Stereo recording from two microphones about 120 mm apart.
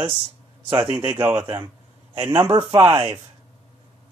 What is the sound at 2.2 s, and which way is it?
Speech, 45° right (ahead or behind).